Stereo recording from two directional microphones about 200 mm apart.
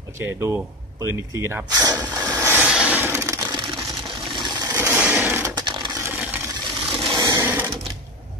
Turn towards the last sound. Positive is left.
turn(degrees=-10)  # may be behind; listen again after turning